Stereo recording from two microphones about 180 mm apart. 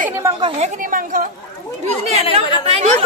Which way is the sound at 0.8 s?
50° right (ahead or behind).